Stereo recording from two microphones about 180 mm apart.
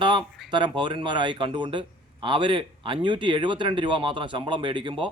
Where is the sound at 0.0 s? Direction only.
25° right (ahead or behind).